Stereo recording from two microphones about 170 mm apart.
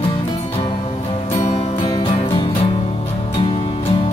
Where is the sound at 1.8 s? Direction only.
25° left (ahead or behind).